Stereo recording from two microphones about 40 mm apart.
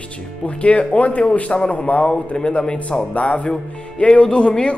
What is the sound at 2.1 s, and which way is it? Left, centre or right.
Speech, left.